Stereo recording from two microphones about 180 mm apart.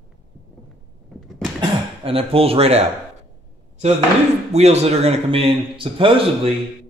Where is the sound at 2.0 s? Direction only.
30° right (ahead or behind).